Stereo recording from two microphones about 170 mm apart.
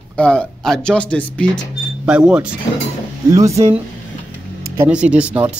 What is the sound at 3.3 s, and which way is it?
Speech, 20° right (ahead or behind).